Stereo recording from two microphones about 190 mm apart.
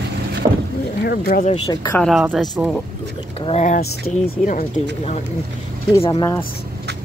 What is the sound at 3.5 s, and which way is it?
Speech, 40° left (ahead or behind).